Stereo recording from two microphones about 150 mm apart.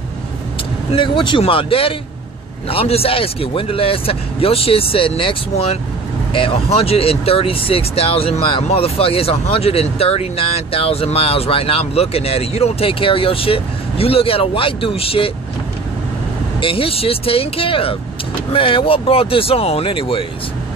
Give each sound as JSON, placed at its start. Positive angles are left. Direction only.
{"t": 0.9, "sound": "speech", "side_deg": 35}
{"t": 16.6, "sound": "speech", "side_deg": 40}